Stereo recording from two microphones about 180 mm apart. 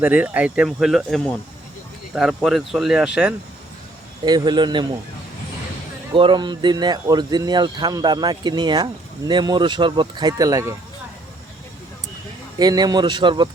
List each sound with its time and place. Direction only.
0.0 s speech: 10° right (ahead or behind)
4.3 s speech: 25° right (ahead or behind)
6.1 s speech: 25° right (ahead or behind)
12.5 s speech: 20° right (ahead or behind)